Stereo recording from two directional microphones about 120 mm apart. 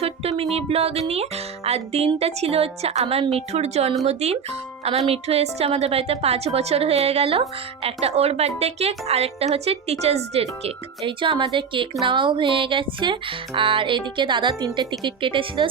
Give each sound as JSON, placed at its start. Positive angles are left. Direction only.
{"t": 0.0, "sound": "music", "side_deg": -55}
{"t": 0.5, "sound": "a woman's voice", "side_deg": -55}
{"t": 12.0, "sound": "music", "side_deg": -45}